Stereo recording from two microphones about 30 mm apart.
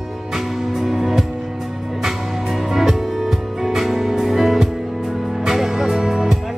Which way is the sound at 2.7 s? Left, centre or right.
Centre.